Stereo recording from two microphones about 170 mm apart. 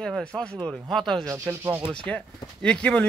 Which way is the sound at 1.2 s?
15° right (ahead or behind).